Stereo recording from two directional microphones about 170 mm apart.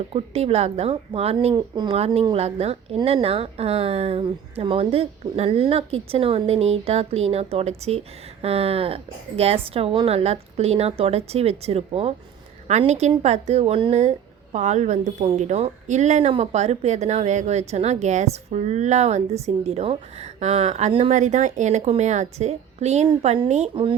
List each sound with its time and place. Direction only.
0.1 s a woman's voice: 35° right (ahead or behind)